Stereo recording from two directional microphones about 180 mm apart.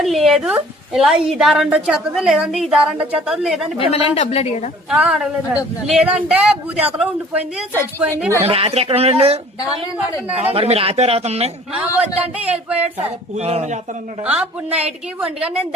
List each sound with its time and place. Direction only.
0.0 s a woman's voice: centre (ahead or behind)
3.8 s speech: 30° left (ahead or behind)
4.9 s a woman's voice: 5° right (ahead or behind)
8.4 s speech: 30° right (ahead or behind)
9.6 s a woman's voice: 20° left (ahead or behind)
10.4 s speech: 35° right (ahead or behind)
11.7 s a man's voice: 5° right (ahead or behind)
13.0 s speech: 35° right (ahead or behind)
14.3 s a man's voice: 5° right (ahead or behind)